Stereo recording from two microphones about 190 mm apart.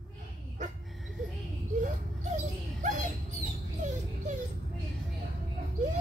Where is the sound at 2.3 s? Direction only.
40° right (ahead or behind).